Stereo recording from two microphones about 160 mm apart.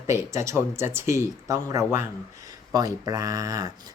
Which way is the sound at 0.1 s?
20° right (ahead or behind).